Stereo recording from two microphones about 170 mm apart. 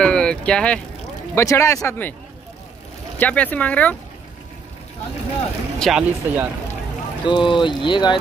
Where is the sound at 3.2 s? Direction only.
10° left (ahead or behind).